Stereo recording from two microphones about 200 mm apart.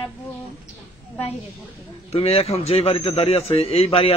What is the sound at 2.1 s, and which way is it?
A man's voice, 30° left (ahead or behind).